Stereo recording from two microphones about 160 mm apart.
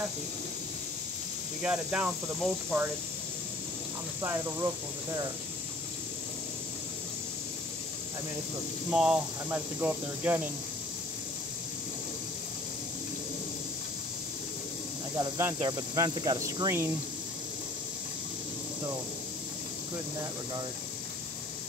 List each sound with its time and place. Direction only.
1.6 s speech: 5° right (ahead or behind)
4.2 s speech: 15° right (ahead or behind)
8.9 s speech: 5° right (ahead or behind)
15.1 s speech: 15° right (ahead or behind)
15.6 s cricket: 25° right (ahead or behind)